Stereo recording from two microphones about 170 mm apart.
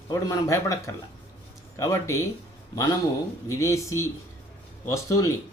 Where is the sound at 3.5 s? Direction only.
15° left (ahead or behind).